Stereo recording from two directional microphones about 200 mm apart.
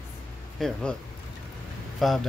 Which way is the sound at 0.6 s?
5° left (ahead or behind).